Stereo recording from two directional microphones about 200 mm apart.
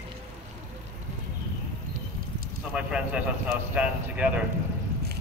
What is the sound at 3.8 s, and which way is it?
Speech, 5° right (ahead or behind).